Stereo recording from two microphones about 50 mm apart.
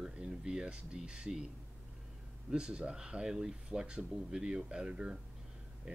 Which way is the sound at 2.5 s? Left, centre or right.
Centre.